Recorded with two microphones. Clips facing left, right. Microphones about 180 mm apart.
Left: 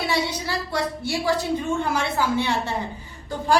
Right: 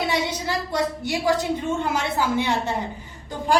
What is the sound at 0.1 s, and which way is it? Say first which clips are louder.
A woman's voice: right 1 dB; 20° right (ahead or behind).